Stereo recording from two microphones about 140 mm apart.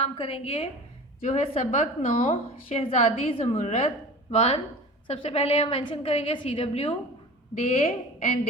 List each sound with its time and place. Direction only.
0.0 s a woman's voice: 45° left (ahead or behind)